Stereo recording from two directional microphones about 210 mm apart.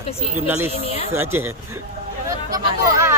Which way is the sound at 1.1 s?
10° right (ahead or behind).